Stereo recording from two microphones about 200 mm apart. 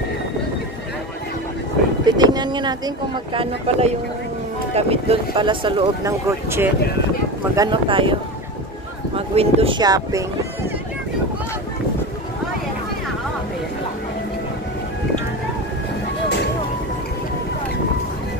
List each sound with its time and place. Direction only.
2.0 s boat: 20° right (ahead or behind)
3.3 s speech: 30° right (ahead or behind)
6.2 s speech: 10° right (ahead or behind)